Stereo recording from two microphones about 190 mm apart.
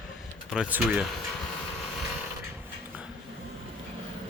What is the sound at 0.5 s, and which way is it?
Speech, 5° right (ahead or behind).